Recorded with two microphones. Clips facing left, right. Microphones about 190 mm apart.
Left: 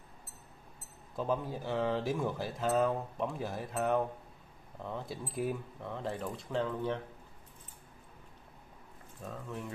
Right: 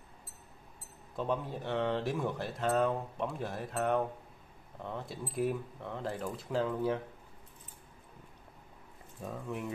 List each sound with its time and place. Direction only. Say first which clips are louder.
1.1 s speech: left 1 dB; centre (ahead or behind)
9.2 s speech: right 3 dB; 15° right (ahead or behind)